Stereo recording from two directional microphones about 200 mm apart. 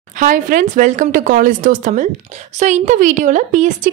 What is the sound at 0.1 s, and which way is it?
Speech, 40° right (ahead or behind).